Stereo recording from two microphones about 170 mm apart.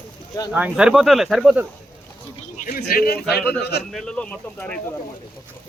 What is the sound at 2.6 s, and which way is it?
Speech, 55° left (ahead or behind).